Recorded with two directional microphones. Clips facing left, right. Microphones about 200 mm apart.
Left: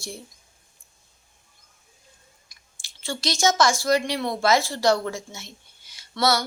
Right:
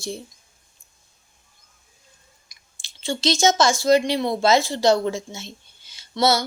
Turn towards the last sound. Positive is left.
turn(degrees=-25)  # may be behind; listen again after turning